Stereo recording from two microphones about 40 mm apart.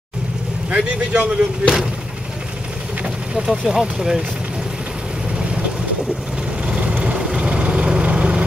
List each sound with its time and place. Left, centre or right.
0.7 s speech: right
3.4 s speech: centre
6.6 s vehicle: right